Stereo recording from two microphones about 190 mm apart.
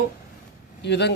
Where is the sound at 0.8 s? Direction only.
65° left (ahead or behind).